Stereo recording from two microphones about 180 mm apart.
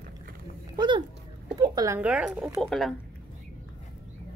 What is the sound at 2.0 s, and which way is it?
Speech, 5° right (ahead or behind).